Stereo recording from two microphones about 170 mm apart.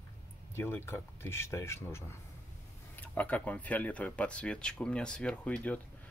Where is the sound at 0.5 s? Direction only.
15° left (ahead or behind).